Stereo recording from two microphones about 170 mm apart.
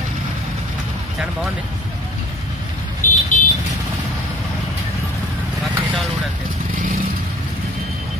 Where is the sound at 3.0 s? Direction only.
50° left (ahead or behind).